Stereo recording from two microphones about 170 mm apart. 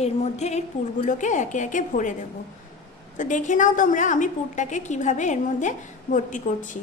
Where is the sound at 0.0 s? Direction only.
40° left (ahead or behind).